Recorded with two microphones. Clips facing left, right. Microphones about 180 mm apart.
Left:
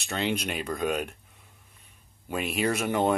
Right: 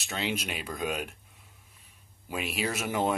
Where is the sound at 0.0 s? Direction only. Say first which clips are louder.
Left 4 dB; 5° right (ahead or behind).